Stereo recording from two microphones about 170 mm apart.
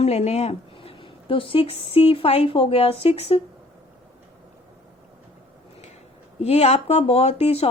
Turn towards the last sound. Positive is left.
turn(degrees=35)  # may be behind; listen again after turning